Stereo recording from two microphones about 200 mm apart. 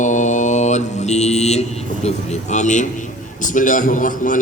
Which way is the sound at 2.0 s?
35° left (ahead or behind).